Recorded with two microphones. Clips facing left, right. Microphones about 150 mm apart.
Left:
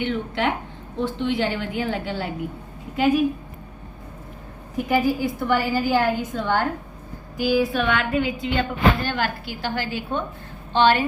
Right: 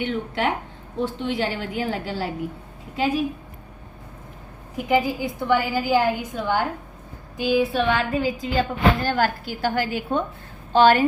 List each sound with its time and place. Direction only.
0.0 s a woman's voice: 40° right (ahead or behind)
4.9 s a woman's voice: 20° right (ahead or behind)
7.3 s a woman's voice: 20° right (ahead or behind); by 11.0 s 40° right (ahead or behind)